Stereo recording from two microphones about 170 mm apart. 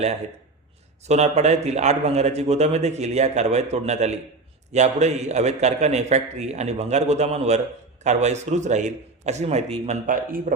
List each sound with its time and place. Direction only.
1.0 s a man's voice: 40° right (ahead or behind)